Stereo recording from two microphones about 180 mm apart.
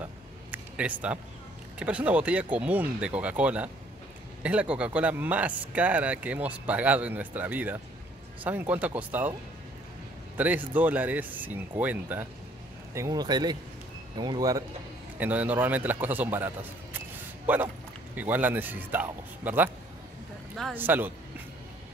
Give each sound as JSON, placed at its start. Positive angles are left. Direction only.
{"t": 0.0, "sound": "a sound", "side_deg": -10}
{"t": 1.8, "sound": "speech", "side_deg": -5}
{"t": 10.3, "sound": "a man's voice", "side_deg": -10}
{"t": 15.1, "sound": "speech", "side_deg": -10}
{"t": 18.1, "sound": "speech", "side_deg": -10}
{"t": 20.7, "sound": "speech", "side_deg": -10}